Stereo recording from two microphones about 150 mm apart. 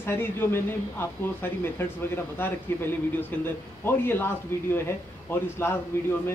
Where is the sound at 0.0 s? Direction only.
15° left (ahead or behind).